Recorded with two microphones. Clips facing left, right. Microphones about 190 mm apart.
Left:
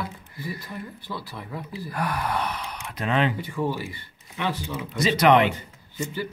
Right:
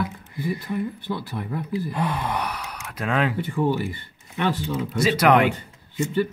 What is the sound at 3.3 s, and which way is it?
Speech, 60° right (ahead or behind).